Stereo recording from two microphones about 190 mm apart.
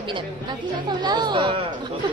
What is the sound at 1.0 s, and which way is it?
Speech, 20° right (ahead or behind).